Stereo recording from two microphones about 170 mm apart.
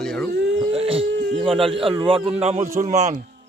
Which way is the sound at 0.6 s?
35° right (ahead or behind).